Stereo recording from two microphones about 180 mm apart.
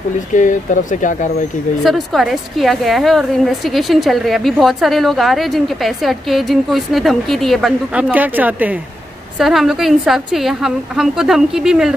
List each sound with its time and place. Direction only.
0.3 s speech: 45° left (ahead or behind)
1.9 s a woman's voice: centre (ahead or behind)